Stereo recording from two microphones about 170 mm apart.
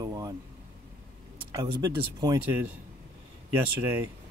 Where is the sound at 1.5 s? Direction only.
25° right (ahead or behind).